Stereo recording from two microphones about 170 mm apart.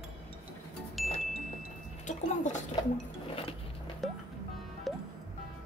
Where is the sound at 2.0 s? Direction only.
45° left (ahead or behind).